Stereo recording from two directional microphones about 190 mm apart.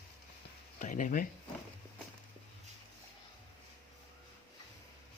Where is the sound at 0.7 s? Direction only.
45° left (ahead or behind).